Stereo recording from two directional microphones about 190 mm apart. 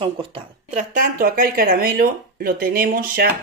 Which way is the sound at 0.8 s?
45° right (ahead or behind).